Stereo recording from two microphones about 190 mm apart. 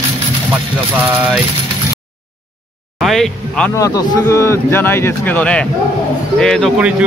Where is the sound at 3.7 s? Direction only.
15° left (ahead or behind).